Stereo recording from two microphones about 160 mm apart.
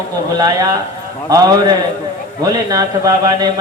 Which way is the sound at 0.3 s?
25° right (ahead or behind).